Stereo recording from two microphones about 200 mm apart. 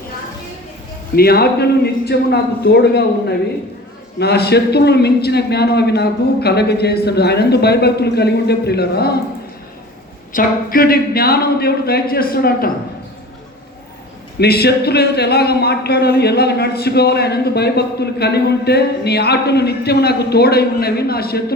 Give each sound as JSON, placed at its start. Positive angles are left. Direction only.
{"t": 1.1, "sound": "a man's voice", "side_deg": 50}
{"t": 10.3, "sound": "speech", "side_deg": 45}
{"t": 14.3, "sound": "speech", "side_deg": 50}